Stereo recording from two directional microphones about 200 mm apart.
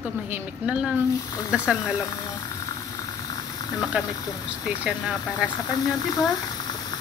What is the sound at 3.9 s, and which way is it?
Speech, 5° right (ahead or behind).